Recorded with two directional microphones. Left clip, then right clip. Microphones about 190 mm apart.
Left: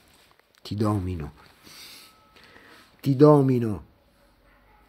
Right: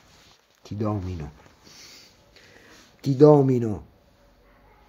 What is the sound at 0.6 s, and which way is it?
Speech, 45° left (ahead or behind).